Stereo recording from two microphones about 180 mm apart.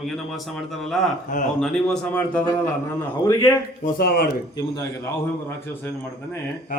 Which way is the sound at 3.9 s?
60° left (ahead or behind).